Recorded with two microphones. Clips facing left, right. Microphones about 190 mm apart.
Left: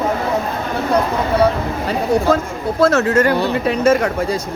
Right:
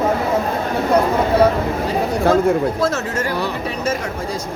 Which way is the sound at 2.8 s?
65° left (ahead or behind).